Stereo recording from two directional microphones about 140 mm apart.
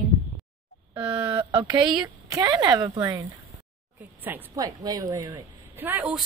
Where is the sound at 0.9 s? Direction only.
35° right (ahead or behind).